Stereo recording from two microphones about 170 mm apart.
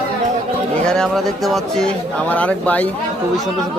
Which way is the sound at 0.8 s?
5° left (ahead or behind).